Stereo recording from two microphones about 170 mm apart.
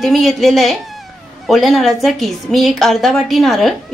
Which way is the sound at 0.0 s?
Centre (ahead or behind).